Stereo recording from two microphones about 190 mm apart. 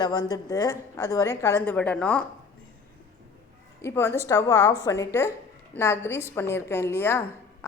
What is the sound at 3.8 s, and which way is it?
A woman's voice, 15° left (ahead or behind).